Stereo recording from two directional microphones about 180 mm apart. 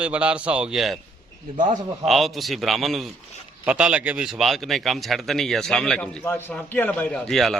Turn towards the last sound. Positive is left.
turn(degrees=0)  # may be behind; listen again after turning